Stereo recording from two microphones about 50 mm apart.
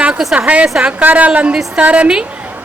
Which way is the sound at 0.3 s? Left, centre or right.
Right.